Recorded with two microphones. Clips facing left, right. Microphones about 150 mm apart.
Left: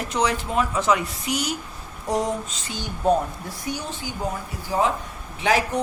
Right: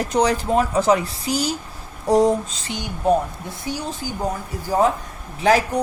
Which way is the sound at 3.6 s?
30° right (ahead or behind).